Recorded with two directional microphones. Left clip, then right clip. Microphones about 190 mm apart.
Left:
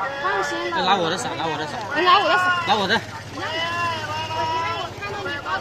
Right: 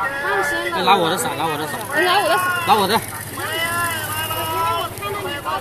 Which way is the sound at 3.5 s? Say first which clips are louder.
Right 2 dB; 35° left (ahead or behind).